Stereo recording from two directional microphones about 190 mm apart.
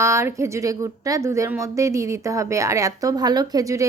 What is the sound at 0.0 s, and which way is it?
A woman's voice, 15° right (ahead or behind).